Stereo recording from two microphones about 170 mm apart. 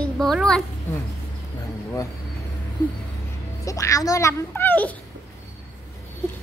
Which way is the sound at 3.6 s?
20° left (ahead or behind).